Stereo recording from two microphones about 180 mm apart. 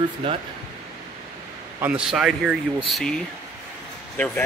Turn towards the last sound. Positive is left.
turn(degrees=5)  # may be behind; listen again after turning